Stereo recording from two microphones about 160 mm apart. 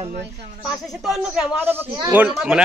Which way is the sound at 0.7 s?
Centre (ahead or behind).